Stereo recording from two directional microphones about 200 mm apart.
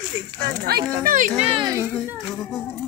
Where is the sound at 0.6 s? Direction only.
50° right (ahead or behind).